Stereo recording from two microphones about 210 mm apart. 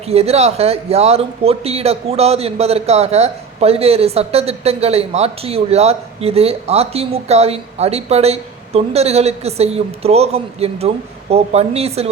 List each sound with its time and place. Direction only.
0.1 s speech: 30° right (ahead or behind)